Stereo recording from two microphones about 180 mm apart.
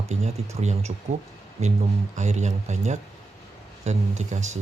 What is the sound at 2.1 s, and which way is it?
Speech, 40° right (ahead or behind).